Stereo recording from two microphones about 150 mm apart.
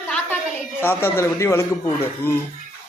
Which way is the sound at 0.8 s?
15° left (ahead or behind).